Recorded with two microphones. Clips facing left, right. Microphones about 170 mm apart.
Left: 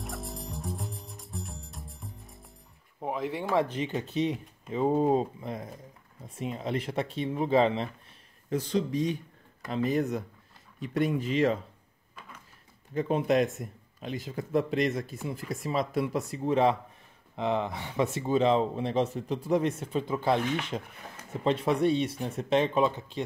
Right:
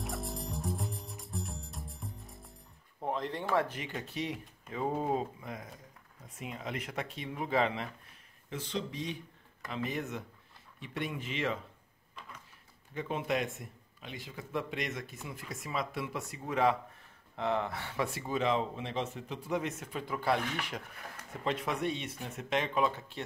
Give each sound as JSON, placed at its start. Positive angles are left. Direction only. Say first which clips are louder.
{"t": 0.0, "sound": "music", "louder": "even", "side_deg": 0}
{"t": 3.0, "sound": "speech", "louder": "left 3 dB", "side_deg": 5}
{"t": 8.5, "sound": "speech", "louder": "left 9 dB", "side_deg": 40}
{"t": 12.9, "sound": "speech", "louder": "left 8 dB", "side_deg": 40}